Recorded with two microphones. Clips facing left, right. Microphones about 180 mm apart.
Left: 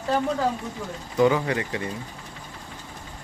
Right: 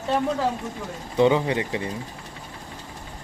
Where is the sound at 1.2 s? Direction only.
25° right (ahead or behind).